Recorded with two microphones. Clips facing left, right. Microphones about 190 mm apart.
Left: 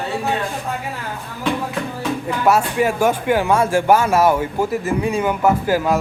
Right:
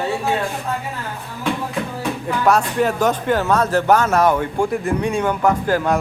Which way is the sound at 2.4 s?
5° left (ahead or behind).